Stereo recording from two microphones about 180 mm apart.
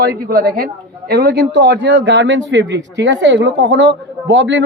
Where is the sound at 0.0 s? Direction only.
60° right (ahead or behind).